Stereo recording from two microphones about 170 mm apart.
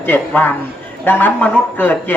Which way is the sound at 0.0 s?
10° left (ahead or behind).